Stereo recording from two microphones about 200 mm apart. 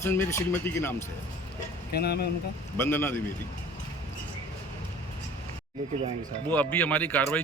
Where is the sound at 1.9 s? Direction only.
55° left (ahead or behind).